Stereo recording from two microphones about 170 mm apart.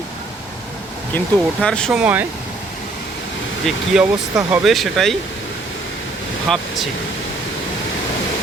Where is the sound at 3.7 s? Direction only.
5° right (ahead or behind).